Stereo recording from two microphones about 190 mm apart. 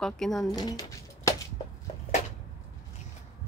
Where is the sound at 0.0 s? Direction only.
Centre (ahead or behind).